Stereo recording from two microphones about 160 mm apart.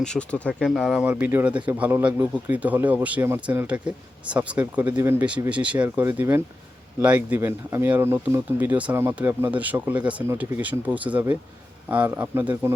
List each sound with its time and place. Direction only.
0.0 s speech: 5° left (ahead or behind); by 4.9 s 10° right (ahead or behind)
4.9 s speech: 25° right (ahead or behind)
5.4 s speech: 10° right (ahead or behind)